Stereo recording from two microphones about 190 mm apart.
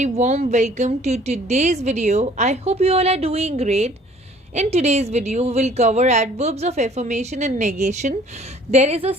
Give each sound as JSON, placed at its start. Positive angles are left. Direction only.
{"t": 0.0, "sound": "a woman's voice", "side_deg": -35}